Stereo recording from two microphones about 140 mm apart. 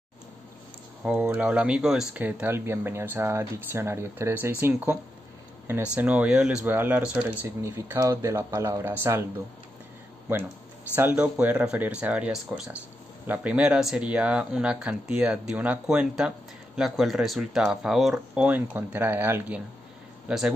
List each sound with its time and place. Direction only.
1.3 s speech: 10° right (ahead or behind)
2.1 s speech: 15° right (ahead or behind)
11.0 s speech: 10° right (ahead or behind)
20.2 s speech: 5° right (ahead or behind)